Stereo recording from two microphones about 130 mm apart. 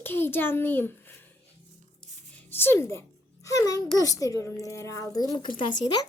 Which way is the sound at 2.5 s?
15° left (ahead or behind).